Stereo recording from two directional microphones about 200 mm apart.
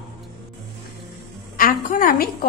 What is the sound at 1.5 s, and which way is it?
Speech, 45° left (ahead or behind).